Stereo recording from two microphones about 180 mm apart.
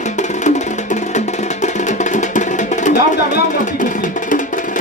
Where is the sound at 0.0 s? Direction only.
40° left (ahead or behind).